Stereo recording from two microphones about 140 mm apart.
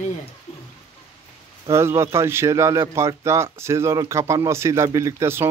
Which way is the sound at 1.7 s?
20° right (ahead or behind).